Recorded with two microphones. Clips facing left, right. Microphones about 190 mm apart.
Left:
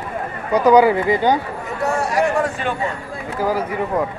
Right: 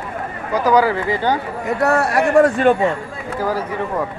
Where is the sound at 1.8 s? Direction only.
60° right (ahead or behind).